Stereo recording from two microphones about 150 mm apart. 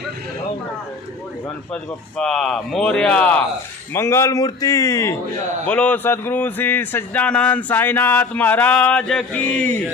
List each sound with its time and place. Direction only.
1.7 s a man's voice: 5° left (ahead or behind); by 5.1 s 20° left (ahead or behind)
5.6 s a man's voice: 10° left (ahead or behind)